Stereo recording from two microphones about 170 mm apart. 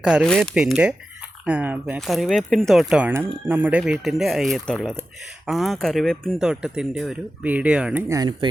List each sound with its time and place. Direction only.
0.0 s speech: 5° right (ahead or behind)
8.0 s speech: 20° right (ahead or behind)